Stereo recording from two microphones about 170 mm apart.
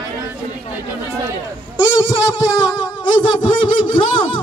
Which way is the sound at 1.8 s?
30° left (ahead or behind).